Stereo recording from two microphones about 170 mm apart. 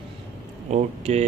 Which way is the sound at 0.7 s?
40° right (ahead or behind).